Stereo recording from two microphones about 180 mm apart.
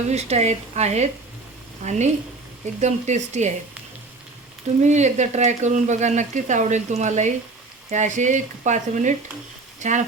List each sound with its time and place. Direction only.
0.1 s speech: 40° right (ahead or behind)
4.8 s speech: 40° right (ahead or behind)